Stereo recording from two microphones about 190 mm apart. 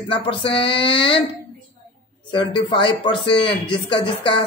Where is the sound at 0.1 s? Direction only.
30° left (ahead or behind).